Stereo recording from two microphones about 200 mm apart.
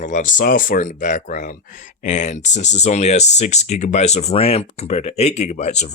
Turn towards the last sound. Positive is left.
turn(degrees=35)  # may be behind; listen again after turning